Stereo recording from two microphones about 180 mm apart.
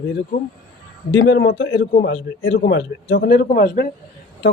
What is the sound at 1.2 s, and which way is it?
Speech, 65° left (ahead or behind).